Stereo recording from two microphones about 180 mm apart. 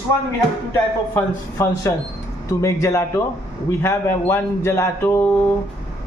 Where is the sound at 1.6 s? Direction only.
15° left (ahead or behind).